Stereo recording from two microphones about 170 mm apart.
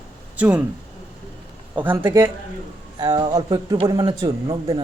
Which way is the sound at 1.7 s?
10° right (ahead or behind).